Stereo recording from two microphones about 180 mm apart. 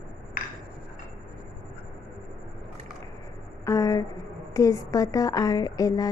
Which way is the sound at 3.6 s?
15° left (ahead or behind).